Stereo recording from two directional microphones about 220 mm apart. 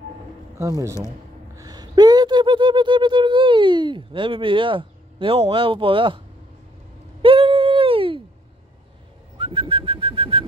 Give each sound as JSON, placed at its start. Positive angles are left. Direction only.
{"t": 0.6, "sound": "speech", "side_deg": -15}
{"t": 7.2, "sound": "a sound", "side_deg": -25}
{"t": 9.4, "sound": "bird", "side_deg": -25}